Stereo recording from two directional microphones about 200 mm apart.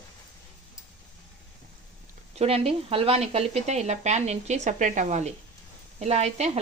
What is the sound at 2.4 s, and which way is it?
Speech, 30° right (ahead or behind).